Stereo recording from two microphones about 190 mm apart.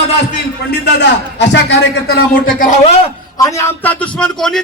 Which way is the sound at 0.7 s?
60° left (ahead or behind).